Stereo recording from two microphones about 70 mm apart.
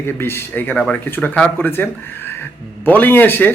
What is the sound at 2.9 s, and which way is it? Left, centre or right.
Speech, left.